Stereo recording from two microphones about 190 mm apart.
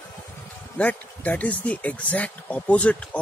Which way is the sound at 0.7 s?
10° left (ahead or behind).